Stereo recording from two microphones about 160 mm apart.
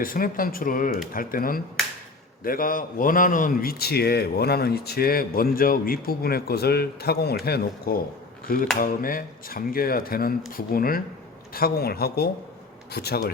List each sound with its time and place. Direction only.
0.0 s a man's voice: 60° left (ahead or behind); by 7.9 s 80° left
8.8 s a man's voice: 60° left (ahead or behind); by 13.3 s 80° left